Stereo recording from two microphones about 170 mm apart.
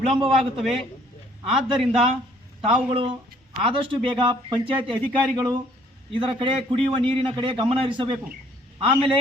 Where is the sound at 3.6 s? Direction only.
30° right (ahead or behind).